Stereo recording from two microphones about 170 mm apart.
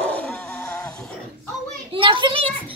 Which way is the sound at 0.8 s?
5° left (ahead or behind).